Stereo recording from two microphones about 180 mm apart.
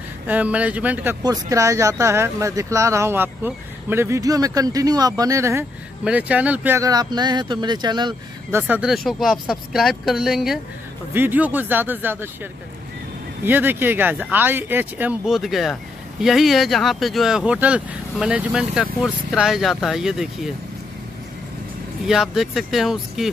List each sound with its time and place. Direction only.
0.3 s speech: 10° right (ahead or behind)
1.2 s speech: 20° right (ahead or behind)
8.5 s speech: 10° right (ahead or behind)
13.4 s speech: 10° right (ahead or behind)
22.0 s speech: centre (ahead or behind)